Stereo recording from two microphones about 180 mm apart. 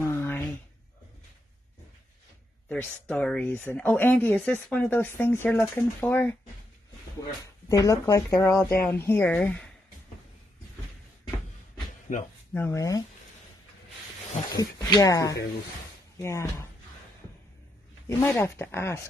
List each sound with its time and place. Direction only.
0.0 s a sound: 15° left (ahead or behind)
2.7 s speech: 5° left (ahead or behind)
7.6 s speech: 20° left (ahead or behind)
12.1 s speech: 45° left (ahead or behind)
12.5 s speech: 15° left (ahead or behind)
14.6 s speech: 20° left (ahead or behind)
18.0 s speech: 15° left (ahead or behind)